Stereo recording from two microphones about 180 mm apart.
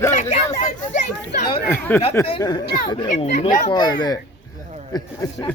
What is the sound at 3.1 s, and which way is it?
Speech, 40° left (ahead or behind).